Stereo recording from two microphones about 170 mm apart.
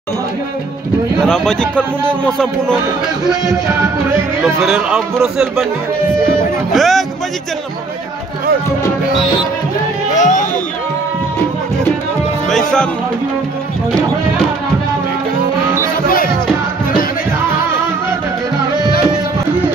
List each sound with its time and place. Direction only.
1.2 s a man's voice: 5° left (ahead or behind)
4.6 s a man's voice: 5° right (ahead or behind)
6.7 s music: centre (ahead or behind)
10.1 s music: 45° left (ahead or behind)
12.4 s speech: centre (ahead or behind)